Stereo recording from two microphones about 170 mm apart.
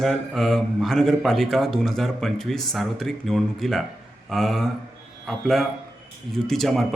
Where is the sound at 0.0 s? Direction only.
Centre (ahead or behind).